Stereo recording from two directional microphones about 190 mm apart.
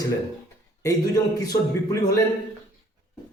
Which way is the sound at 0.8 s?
20° left (ahead or behind).